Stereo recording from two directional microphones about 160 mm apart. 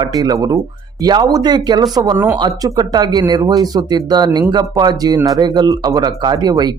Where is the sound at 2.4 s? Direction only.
25° right (ahead or behind).